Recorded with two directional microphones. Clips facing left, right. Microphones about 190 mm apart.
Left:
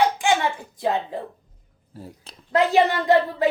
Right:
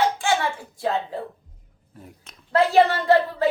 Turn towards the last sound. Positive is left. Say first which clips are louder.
# even
turn(degrees=15)  # may be behind; listen again after turning